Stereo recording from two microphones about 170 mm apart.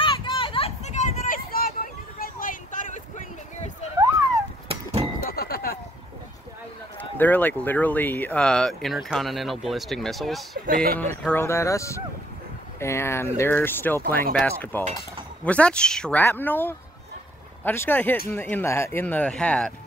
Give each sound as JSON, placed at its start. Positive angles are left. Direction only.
{"t": 0.0, "sound": "children playing", "side_deg": 30}
{"t": 4.6, "sound": "a sound", "side_deg": -35}
{"t": 5.2, "sound": "a sound", "side_deg": 65}
{"t": 7.0, "sound": "run", "side_deg": 10}
{"t": 7.6, "sound": "speech", "side_deg": 10}
{"t": 10.7, "sound": "speech", "side_deg": -60}
{"t": 11.0, "sound": "speech", "side_deg": 10}